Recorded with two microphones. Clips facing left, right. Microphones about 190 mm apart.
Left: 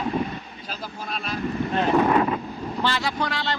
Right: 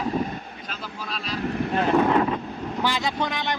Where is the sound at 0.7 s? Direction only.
45° left (ahead or behind).